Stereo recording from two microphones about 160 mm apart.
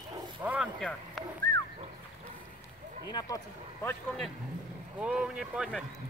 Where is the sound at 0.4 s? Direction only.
10° right (ahead or behind).